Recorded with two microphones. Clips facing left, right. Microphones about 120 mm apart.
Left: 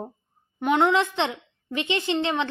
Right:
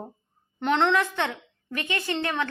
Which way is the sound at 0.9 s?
20° left (ahead or behind).